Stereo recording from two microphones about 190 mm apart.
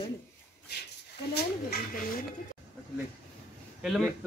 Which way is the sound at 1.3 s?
50° left (ahead or behind).